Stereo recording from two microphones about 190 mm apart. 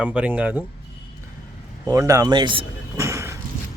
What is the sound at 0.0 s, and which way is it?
Speech, 5° right (ahead or behind).